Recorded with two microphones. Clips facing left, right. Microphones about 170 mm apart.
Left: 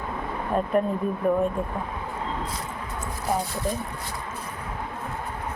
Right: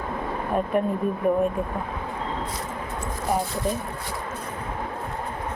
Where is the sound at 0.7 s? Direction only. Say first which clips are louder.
Left 1 dB; 5° right (ahead or behind).